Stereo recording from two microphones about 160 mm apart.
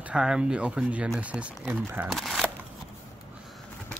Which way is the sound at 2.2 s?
Centre (ahead or behind).